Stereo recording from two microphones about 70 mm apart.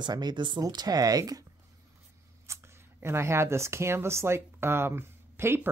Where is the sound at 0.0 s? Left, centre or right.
Right.